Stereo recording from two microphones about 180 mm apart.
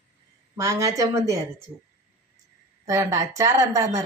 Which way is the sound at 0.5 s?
15° right (ahead or behind).